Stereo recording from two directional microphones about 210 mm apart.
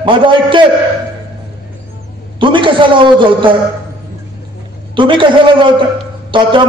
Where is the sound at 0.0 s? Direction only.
25° right (ahead or behind).